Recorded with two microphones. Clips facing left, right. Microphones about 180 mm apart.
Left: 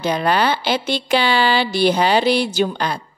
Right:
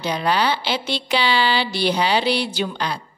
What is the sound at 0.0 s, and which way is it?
A woman's voice, 50° left (ahead or behind).